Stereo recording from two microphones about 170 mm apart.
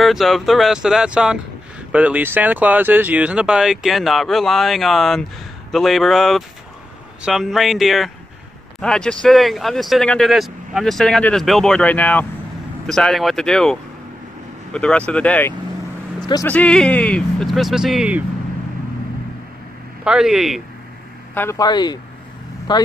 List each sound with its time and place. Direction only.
0.0 s speech: centre (ahead or behind)
16.2 s a sound: 25° left (ahead or behind)
16.4 s speech: 5° left (ahead or behind)
20.1 s speech: 5° right (ahead or behind)
21.4 s speech: 20° left (ahead or behind)